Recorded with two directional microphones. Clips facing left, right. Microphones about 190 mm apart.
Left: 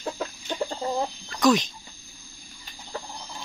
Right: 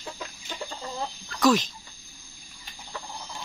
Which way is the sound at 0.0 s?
50° left (ahead or behind).